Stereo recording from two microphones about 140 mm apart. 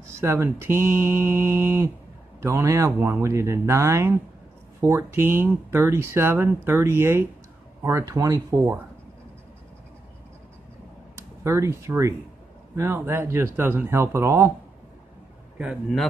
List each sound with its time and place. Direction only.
0.0 s speech: 20° right (ahead or behind)
11.1 s speech: 20° right (ahead or behind)
15.5 s a man's voice: 5° right (ahead or behind)